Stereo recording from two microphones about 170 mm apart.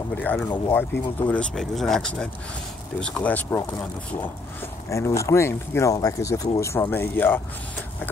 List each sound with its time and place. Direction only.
0.2 s speech: 10° left (ahead or behind)